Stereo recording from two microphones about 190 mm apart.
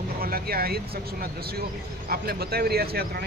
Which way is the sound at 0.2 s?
50° right (ahead or behind).